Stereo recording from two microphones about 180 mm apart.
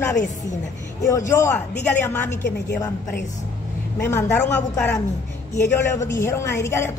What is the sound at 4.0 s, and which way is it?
A woman's voice, 15° left (ahead or behind).